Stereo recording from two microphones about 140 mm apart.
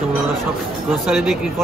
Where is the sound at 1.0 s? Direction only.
Centre (ahead or behind).